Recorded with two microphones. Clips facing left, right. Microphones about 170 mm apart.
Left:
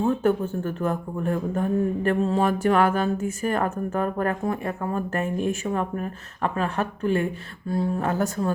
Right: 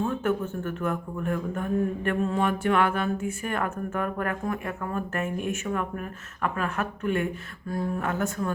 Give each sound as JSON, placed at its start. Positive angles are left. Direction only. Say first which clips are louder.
{"t": 0.0, "sound": "speech", "louder": "left 5 dB", "side_deg": 35}